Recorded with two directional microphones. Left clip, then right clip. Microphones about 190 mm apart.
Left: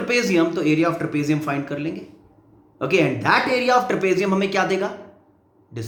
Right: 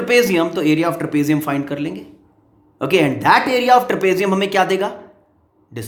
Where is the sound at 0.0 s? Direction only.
35° right (ahead or behind).